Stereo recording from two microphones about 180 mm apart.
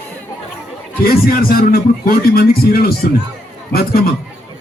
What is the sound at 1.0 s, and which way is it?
A man's voice, 55° left (ahead or behind).